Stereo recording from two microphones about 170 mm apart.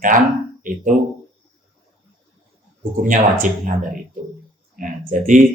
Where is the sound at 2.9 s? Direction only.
50° right (ahead or behind).